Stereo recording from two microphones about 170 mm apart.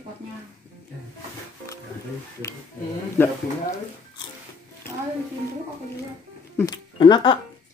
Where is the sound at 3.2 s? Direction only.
15° left (ahead or behind).